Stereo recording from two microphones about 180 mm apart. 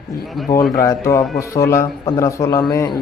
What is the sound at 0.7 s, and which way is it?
A man's voice, 15° left (ahead or behind).